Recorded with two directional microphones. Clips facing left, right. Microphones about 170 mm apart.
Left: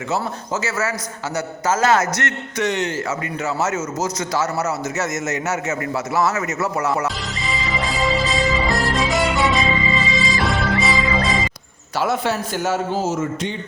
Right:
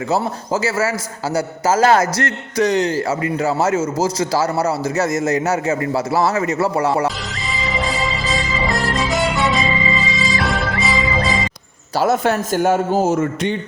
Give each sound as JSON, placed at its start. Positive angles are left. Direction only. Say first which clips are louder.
{"t": 0.1, "sound": "a man's voice", "louder": "right 4 dB", "side_deg": -30}
{"t": 7.5, "sound": "music", "louder": "right 2 dB", "side_deg": 0}
{"t": 11.9, "sound": "a man's voice", "louder": "right 4 dB", "side_deg": -40}